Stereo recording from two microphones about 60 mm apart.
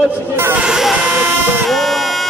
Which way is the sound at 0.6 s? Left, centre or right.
Centre.